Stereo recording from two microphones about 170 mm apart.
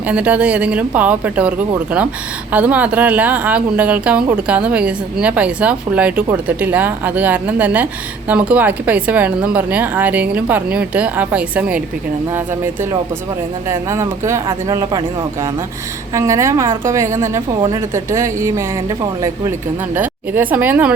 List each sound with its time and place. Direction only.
0.0 s a woman's voice: 10° right (ahead or behind)
13.7 s a woman's voice: 15° right (ahead or behind)